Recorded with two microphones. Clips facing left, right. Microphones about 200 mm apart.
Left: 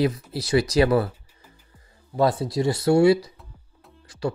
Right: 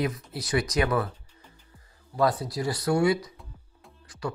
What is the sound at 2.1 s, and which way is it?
Speech, 25° left (ahead or behind).